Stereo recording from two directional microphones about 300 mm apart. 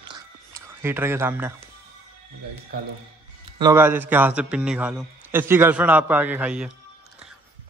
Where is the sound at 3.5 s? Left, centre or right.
Centre.